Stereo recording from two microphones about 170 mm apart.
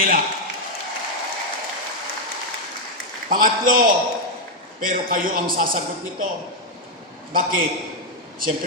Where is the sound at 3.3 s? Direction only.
55° right (ahead or behind).